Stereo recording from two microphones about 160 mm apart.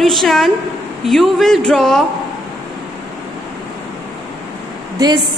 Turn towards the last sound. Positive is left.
turn(degrees=-25)  # may be behind; listen again after turning